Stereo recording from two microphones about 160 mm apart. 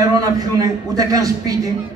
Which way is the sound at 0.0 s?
20° right (ahead or behind).